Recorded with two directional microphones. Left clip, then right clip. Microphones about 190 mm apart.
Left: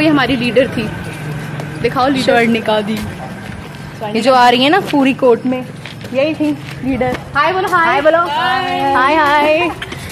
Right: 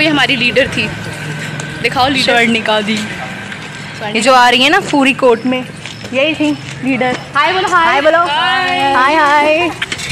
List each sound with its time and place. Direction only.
0.0 s speech: 25° left (ahead or behind)
1.8 s speech: 30° left (ahead or behind)
2.1 s speech: centre (ahead or behind)
4.1 s a woman's voice: 20° right (ahead or behind)
7.1 s a woman's voice: 35° right (ahead or behind)
8.3 s a woman's voice: 15° right (ahead or behind)
8.9 s a woman's voice: 50° right (ahead or behind)